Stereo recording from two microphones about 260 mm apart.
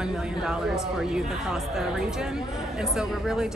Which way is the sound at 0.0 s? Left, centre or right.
Centre.